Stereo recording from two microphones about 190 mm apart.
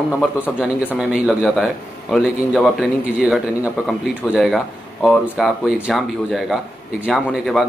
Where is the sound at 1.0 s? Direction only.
5° right (ahead or behind).